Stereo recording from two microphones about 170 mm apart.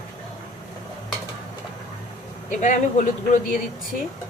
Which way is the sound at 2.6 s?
45° left (ahead or behind).